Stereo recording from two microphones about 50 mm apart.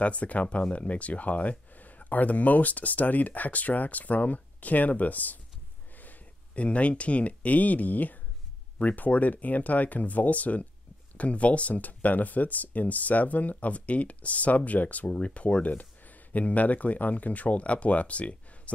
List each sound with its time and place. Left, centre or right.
0.0 s speech: left